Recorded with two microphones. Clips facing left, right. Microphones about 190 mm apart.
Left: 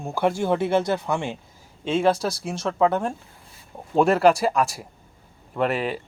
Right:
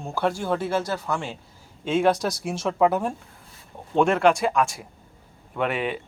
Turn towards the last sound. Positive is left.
turn(degrees=0)  # may be behind; listen again after turning